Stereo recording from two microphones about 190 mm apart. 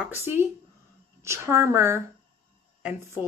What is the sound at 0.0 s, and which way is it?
Speech, 10° right (ahead or behind).